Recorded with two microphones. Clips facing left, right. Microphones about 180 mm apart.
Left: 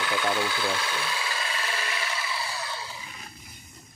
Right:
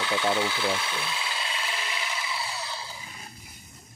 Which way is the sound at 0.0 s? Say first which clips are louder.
Right 1 dB; 25° right (ahead or behind).